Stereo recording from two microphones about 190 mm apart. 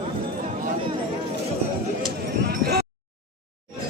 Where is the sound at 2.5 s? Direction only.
55° right (ahead or behind).